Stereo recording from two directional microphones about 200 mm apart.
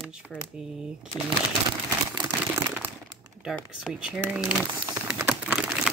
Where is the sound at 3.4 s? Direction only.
5° right (ahead or behind).